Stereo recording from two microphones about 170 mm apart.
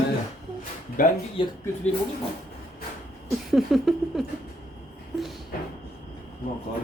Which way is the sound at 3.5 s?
Centre (ahead or behind).